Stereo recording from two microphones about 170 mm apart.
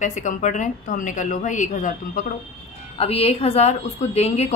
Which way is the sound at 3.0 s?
35° left (ahead or behind).